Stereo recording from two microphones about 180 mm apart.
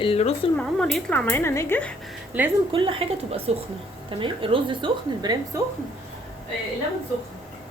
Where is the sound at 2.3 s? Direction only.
10° right (ahead or behind).